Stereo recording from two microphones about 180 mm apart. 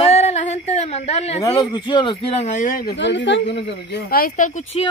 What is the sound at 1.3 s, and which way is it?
Speech, 20° left (ahead or behind).